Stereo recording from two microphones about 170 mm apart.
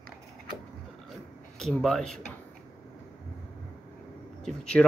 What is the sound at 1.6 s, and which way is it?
Speech, centre (ahead or behind).